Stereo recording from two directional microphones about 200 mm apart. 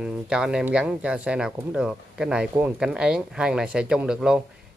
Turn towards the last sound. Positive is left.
turn(degrees=-5)  # may be behind; listen again after turning